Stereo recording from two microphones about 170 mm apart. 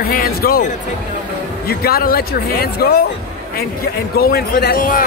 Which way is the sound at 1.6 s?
65° left (ahead or behind).